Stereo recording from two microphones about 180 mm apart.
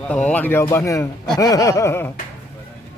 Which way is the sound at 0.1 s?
5° left (ahead or behind).